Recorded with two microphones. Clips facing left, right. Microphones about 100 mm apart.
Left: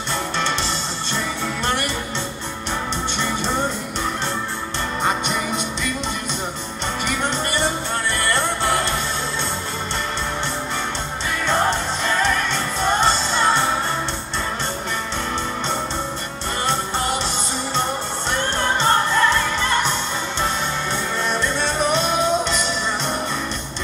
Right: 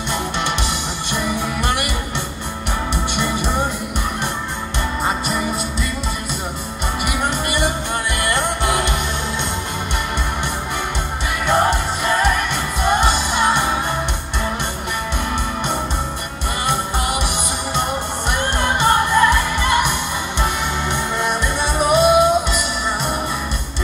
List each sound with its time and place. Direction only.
1.1 s music: 15° right (ahead or behind)
7.1 s music: 10° right (ahead or behind)
11.4 s music: 10° right (ahead or behind)
16.6 s music: 10° right (ahead or behind)
18.3 s music: 15° right (ahead or behind)